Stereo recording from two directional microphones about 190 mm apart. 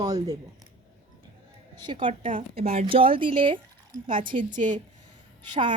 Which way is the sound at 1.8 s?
25° right (ahead or behind).